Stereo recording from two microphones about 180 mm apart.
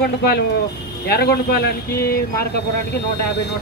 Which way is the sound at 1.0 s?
65° left (ahead or behind).